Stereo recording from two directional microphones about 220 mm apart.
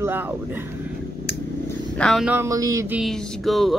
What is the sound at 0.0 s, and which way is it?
Speech, 10° right (ahead or behind).